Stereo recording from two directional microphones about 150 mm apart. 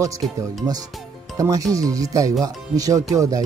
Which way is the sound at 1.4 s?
20° right (ahead or behind).